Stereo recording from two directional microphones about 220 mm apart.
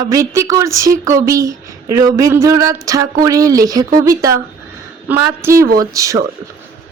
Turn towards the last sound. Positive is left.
turn(degrees=-15)  # may be behind; listen again after turning